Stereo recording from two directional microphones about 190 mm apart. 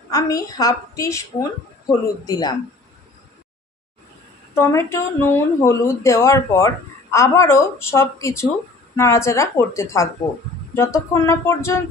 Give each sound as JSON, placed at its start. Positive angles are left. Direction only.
{"t": 0.1, "sound": "a woman's voice", "side_deg": 20}
{"t": 4.6, "sound": "speech", "side_deg": 15}